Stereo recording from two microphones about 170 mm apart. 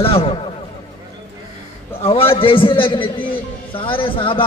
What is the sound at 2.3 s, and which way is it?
A man's voice, 30° left (ahead or behind).